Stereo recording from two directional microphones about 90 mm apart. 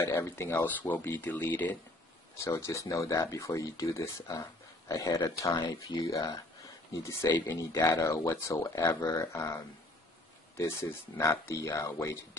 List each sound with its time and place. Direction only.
0.0 s speech: 30° left (ahead or behind)
2.3 s speech: 35° left (ahead or behind)
11.1 s speech: 35° left (ahead or behind)